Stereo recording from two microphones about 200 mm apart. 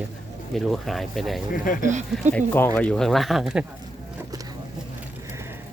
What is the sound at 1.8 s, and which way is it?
Speech, 35° right (ahead or behind).